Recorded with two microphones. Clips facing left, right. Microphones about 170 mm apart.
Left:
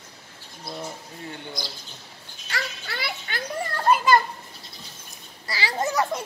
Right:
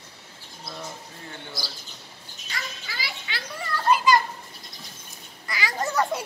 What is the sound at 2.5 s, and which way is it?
Children playing, 60° left (ahead or behind).